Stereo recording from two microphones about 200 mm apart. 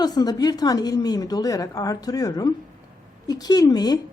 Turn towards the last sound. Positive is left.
turn(degrees=20)  # may be behind; listen again after turning